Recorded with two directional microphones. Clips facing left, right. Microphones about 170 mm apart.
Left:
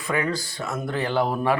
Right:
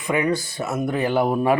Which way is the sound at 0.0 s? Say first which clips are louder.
Right 4 dB; 20° right (ahead or behind).